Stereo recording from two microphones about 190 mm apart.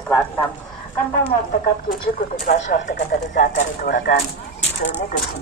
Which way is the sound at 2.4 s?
40° left (ahead or behind).